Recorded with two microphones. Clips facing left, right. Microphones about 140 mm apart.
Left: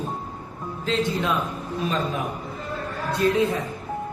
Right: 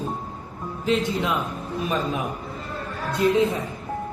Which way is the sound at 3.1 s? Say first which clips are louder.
Right 1 dB; 20° right (ahead or behind).